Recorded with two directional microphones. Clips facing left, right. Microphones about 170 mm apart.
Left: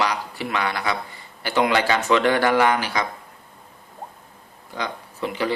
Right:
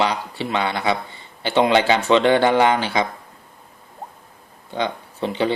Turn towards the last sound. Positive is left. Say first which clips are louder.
# right 4 dB
turn(degrees=-30)  # may be behind; listen again after turning